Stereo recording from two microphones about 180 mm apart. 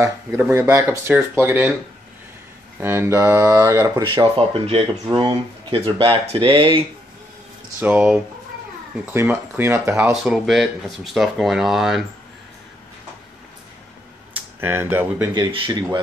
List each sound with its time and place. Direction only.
0.0 s speech: 15° right (ahead or behind)
2.8 s speech: 15° right (ahead or behind); by 6.8 s 30° right (ahead or behind)
7.8 s speech: 5° right (ahead or behind)
10.2 s speech: centre (ahead or behind)
14.3 s speech: 10° right (ahead or behind)
15.3 s speech: 25° right (ahead or behind)